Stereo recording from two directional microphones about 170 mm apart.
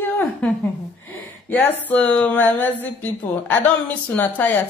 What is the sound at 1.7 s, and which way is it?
Speech, 10° left (ahead or behind).